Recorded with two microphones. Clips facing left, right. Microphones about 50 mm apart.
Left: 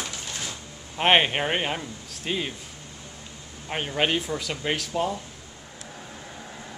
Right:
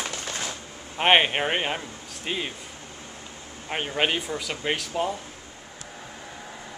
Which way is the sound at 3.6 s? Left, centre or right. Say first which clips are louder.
Even; centre.